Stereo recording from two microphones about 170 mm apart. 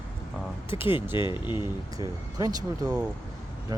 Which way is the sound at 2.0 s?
20° right (ahead or behind).